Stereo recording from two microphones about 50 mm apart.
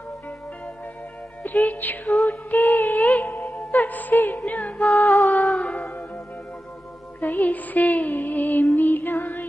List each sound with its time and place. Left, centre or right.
1.4 s music: left
4.8 s music: centre
5.3 s music: left
7.2 s music: left